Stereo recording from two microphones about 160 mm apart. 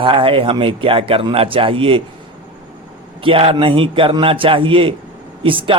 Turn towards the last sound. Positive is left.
turn(degrees=-35)  # may be behind; listen again after turning